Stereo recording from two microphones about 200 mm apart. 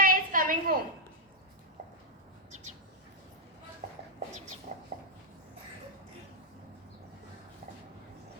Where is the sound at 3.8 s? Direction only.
50° right (ahead or behind).